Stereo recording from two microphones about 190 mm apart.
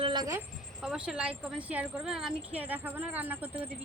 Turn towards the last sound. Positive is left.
turn(degrees=-10)  # may be behind; listen again after turning